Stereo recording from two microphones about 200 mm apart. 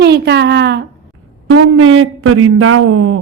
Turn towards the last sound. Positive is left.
turn(degrees=-90)